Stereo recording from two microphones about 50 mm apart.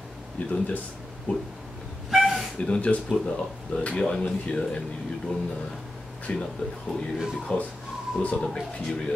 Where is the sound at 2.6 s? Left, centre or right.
Left.